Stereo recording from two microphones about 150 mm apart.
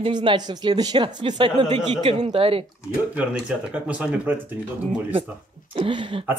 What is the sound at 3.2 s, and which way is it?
Speech, 10° right (ahead or behind).